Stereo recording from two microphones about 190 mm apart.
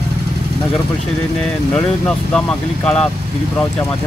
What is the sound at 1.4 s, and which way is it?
Speech, 5° left (ahead or behind).